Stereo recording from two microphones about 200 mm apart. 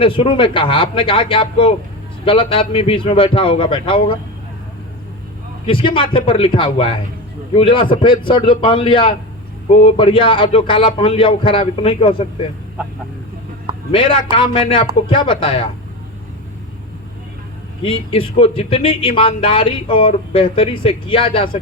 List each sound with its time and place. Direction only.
0.0 s speech: 25° left (ahead or behind)
5.6 s speech: 25° left (ahead or behind)
13.9 s speech: 25° left (ahead or behind)
17.8 s speech: 25° left (ahead or behind)